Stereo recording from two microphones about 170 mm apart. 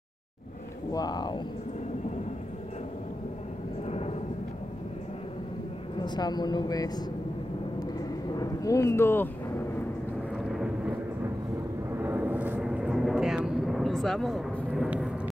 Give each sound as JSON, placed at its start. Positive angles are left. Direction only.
{"t": 0.9, "sound": "a woman's voice", "side_deg": 25}
{"t": 3.8, "sound": "vehicle", "side_deg": 40}
{"t": 5.9, "sound": "a woman's voice", "side_deg": 25}
{"t": 8.4, "sound": "speech", "side_deg": 20}
{"t": 10.3, "sound": "vehicle", "side_deg": 0}
{"t": 12.0, "sound": "vehicle", "side_deg": -10}